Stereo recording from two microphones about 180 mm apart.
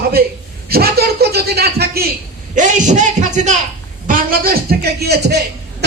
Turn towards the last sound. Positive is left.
turn(degrees=-65)  # may be behind; listen again after turning